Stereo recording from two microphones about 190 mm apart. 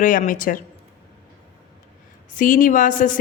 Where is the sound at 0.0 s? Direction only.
45° left (ahead or behind).